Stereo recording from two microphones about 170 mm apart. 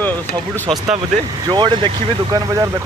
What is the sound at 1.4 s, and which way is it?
Speech, 25° right (ahead or behind).